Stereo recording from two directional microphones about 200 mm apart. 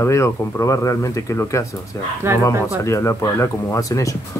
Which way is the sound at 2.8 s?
15° left (ahead or behind).